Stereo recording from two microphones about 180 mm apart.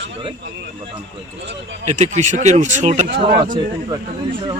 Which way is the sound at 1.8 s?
40° right (ahead or behind).